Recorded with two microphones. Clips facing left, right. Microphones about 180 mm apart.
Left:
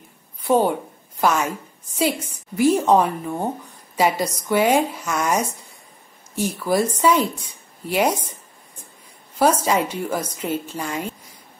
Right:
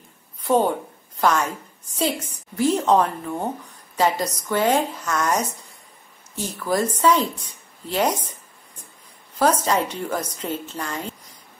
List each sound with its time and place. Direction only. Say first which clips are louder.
0.4 s a sound: left 1 dB; 10° left (ahead or behind)
2.0 s speech: left 2 dB; 10° left (ahead or behind)
9.4 s speech: left 2 dB; 10° left (ahead or behind)